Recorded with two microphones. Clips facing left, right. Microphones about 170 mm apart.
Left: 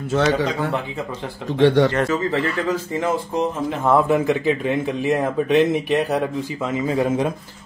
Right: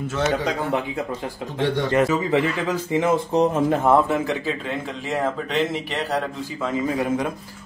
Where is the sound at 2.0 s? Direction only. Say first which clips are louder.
Right 1 dB; 5° right (ahead or behind).